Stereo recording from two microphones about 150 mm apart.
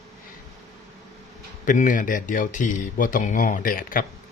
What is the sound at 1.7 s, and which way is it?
Speech, 60° left (ahead or behind).